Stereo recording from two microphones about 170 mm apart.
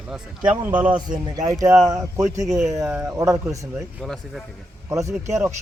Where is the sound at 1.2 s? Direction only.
20° right (ahead or behind).